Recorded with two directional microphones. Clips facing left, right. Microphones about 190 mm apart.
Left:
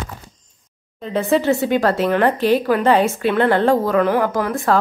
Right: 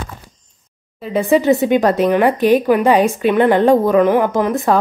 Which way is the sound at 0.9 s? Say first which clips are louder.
Right 3 dB; 10° right (ahead or behind).